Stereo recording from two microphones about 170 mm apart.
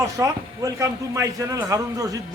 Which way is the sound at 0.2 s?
20° right (ahead or behind).